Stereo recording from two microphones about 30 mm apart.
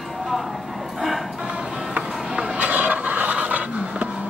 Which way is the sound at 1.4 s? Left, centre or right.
Right.